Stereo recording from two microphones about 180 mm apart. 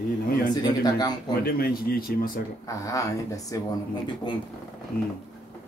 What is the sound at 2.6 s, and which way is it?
Speech, 20° left (ahead or behind).